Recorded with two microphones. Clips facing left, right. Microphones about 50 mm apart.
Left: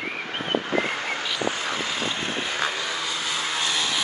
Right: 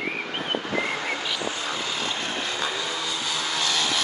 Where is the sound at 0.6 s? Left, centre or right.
Left.